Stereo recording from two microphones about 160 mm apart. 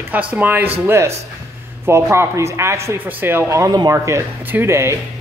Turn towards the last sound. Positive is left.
turn(degrees=-15)  # may be behind; listen again after turning